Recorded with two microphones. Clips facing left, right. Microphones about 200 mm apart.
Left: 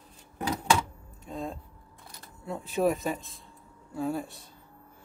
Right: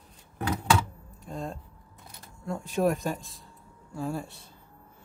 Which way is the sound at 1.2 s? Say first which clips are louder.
Even; centre (ahead or behind).